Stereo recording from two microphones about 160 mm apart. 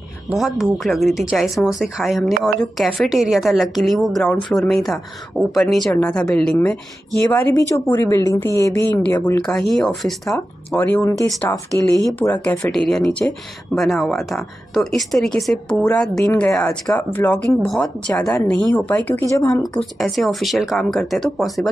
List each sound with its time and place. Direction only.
0.3 s speech: centre (ahead or behind)
9.4 s speech: 5° left (ahead or behind)
10.3 s speech: 15° left (ahead or behind)
11.7 s speech: 25° right (ahead or behind)
12.2 s speech: 10° left (ahead or behind)
19.6 s speech: centre (ahead or behind)